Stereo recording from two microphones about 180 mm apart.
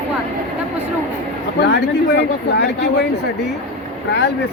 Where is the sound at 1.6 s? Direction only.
65° left (ahead or behind).